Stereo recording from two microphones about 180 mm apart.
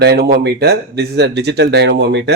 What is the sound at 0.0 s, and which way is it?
Speech, 65° right (ahead or behind).